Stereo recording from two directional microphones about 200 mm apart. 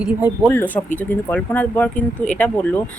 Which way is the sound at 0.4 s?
10° left (ahead or behind).